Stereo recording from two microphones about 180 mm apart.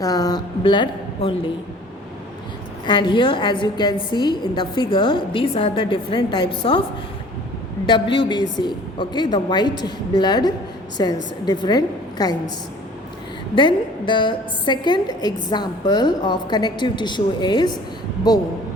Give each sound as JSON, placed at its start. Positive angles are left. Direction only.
{"t": 0.0, "sound": "a woman's voice", "side_deg": 20}
{"t": 2.8, "sound": "a woman's voice", "side_deg": 25}
{"t": 7.9, "sound": "a woman's voice", "side_deg": 25}
{"t": 13.6, "sound": "a woman's voice", "side_deg": 25}